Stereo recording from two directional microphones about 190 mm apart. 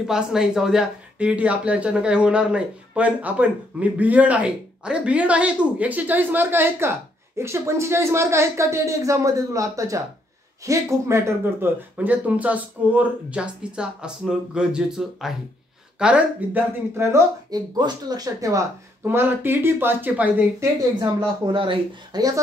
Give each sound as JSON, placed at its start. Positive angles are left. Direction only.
{"t": 0.0, "sound": "speech", "side_deg": -5}
{"t": 21.0, "sound": "speech", "side_deg": -25}